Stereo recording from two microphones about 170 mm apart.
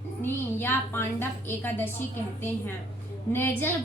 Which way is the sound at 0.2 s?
10° left (ahead or behind).